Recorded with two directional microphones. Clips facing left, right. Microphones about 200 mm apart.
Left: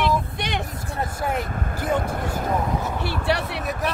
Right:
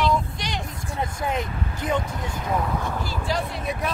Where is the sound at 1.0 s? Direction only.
5° left (ahead or behind).